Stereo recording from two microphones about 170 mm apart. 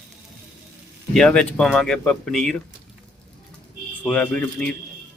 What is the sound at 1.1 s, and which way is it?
Speech, 5° left (ahead or behind).